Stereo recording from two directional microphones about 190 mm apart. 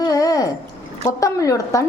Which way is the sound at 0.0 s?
20° left (ahead or behind).